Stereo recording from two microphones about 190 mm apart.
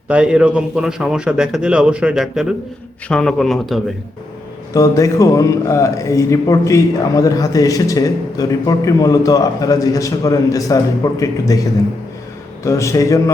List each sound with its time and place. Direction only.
0.1 s a man's voice: 5° right (ahead or behind)
4.7 s speech: 15° left (ahead or behind)